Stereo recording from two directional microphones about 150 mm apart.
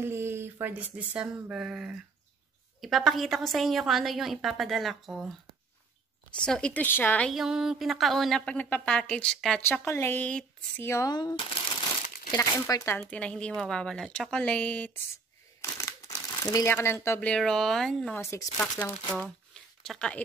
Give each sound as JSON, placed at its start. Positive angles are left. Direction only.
{"t": 0.0, "sound": "a woman's voice", "side_deg": -15}
{"t": 6.3, "sound": "a woman's voice", "side_deg": 5}
{"t": 7.2, "sound": "a woman's voice", "side_deg": 0}
{"t": 9.7, "sound": "speech", "side_deg": 15}
{"t": 13.1, "sound": "a woman's voice", "side_deg": 10}
{"t": 15.6, "sound": "crumpling", "side_deg": 20}
{"t": 16.7, "sound": "a woman's voice", "side_deg": 15}
{"t": 18.2, "sound": "speech", "side_deg": 20}
{"t": 18.6, "sound": "speech", "side_deg": 10}